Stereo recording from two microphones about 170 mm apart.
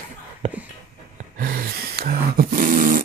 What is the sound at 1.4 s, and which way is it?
Dog, 60° right (ahead or behind).